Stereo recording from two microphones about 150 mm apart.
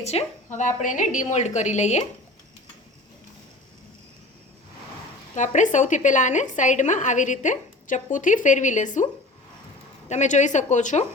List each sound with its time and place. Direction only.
0.0 s a woman's voice: 45° left (ahead or behind)
5.3 s a woman's voice: 55° left (ahead or behind)
10.1 s a woman's voice: 50° left (ahead or behind)